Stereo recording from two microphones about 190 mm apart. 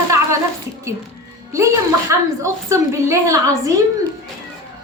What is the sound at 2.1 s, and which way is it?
A woman's voice, 15° right (ahead or behind).